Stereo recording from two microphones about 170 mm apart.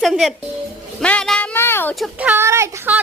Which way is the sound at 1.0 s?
5° left (ahead or behind).